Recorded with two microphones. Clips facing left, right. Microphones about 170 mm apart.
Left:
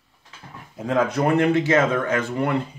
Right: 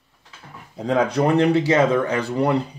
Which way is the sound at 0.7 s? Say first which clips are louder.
Right 2 dB; 35° right (ahead or behind).